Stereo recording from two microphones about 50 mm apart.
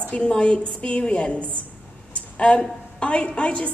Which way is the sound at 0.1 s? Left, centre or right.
Centre.